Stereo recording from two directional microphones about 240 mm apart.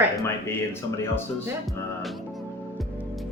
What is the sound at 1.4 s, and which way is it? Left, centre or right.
Music, centre.